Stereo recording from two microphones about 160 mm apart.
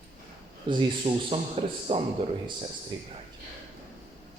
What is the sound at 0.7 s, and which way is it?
A man's voice, 30° right (ahead or behind).